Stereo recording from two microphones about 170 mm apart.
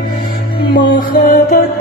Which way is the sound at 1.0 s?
55° left (ahead or behind).